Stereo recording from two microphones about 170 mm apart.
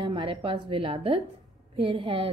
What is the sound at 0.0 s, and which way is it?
A woman's voice, 30° right (ahead or behind).